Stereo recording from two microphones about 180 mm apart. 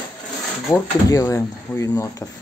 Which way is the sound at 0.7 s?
15° left (ahead or behind).